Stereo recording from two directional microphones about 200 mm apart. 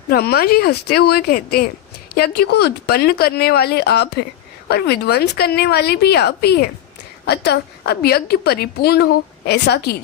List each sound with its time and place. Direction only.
0.1 s speech: 50° left (ahead or behind)